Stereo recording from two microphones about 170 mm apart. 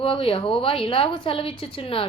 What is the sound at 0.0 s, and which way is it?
A woman's voice, 30° left (ahead or behind).